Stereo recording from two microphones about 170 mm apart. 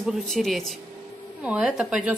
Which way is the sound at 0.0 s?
Centre (ahead or behind).